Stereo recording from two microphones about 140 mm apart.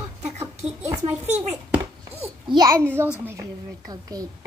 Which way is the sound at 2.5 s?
25° right (ahead or behind).